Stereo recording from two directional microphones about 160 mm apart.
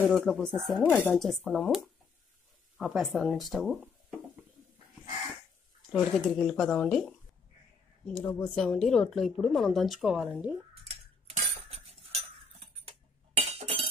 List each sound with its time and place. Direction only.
0.0 s a woman's voice: centre (ahead or behind)
2.8 s a woman's voice: centre (ahead or behind)
6.1 s a woman's voice: 5° left (ahead or behind)
10.7 s cutlery: 40° right (ahead or behind)
13.4 s chink: 40° right (ahead or behind)